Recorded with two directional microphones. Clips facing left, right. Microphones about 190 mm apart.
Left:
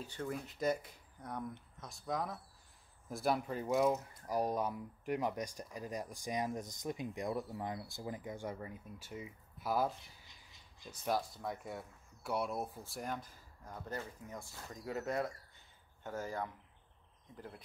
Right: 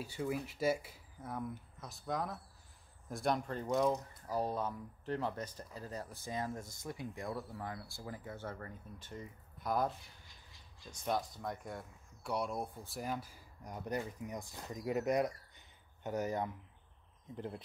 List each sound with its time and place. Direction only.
0.0 s speech: 10° right (ahead or behind)
11.1 s speech: 5° left (ahead or behind); by 16.5 s 20° right (ahead or behind)